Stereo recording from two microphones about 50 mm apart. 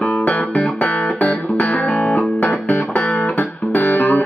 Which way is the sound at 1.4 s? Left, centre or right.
Left.